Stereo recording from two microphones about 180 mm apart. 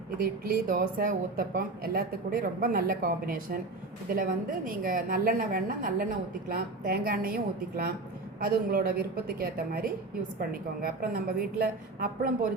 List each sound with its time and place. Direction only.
0.2 s a woman's voice: 55° right (ahead or behind)